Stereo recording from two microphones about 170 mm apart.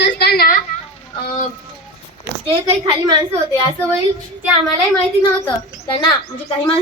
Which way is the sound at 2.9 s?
30° right (ahead or behind).